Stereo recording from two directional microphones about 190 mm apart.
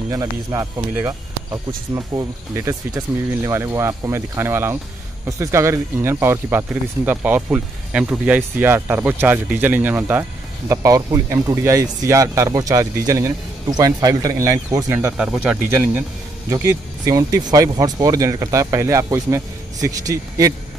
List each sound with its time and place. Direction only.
0.1 s speech: 15° right (ahead or behind)